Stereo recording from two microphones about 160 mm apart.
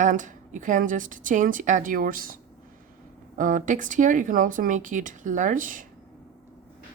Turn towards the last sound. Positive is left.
turn(degrees=-55)  # may be behind; listen again after turning